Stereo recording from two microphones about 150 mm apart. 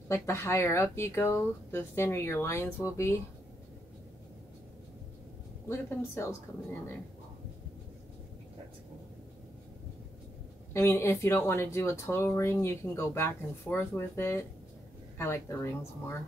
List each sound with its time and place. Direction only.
0.1 s speech: 15° left (ahead or behind)
5.7 s speech: 20° left (ahead or behind)
10.7 s speech: 15° left (ahead or behind)